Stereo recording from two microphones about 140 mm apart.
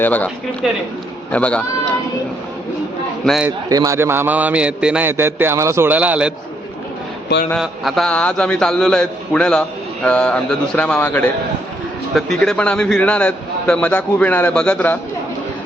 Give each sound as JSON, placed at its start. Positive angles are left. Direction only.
{"t": 0.0, "sound": "a man's voice", "side_deg": 10}
{"t": 0.6, "sound": "a man's voice", "side_deg": 0}
{"t": 1.3, "sound": "a man's voice", "side_deg": 10}
{"t": 3.7, "sound": "a man's voice", "side_deg": -25}
{"t": 7.5, "sound": "a man's voice", "side_deg": 0}
{"t": 12.1, "sound": "a man's voice", "side_deg": 0}